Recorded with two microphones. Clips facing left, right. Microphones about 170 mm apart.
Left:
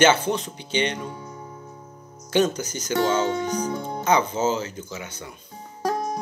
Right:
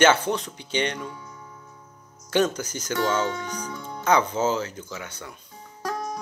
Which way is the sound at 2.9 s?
25° left (ahead or behind).